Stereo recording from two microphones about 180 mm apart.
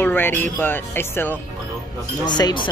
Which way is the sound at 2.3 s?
25° left (ahead or behind).